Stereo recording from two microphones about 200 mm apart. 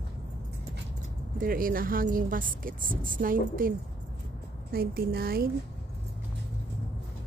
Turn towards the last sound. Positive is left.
turn(degrees=-50)  # may be behind; listen again after turning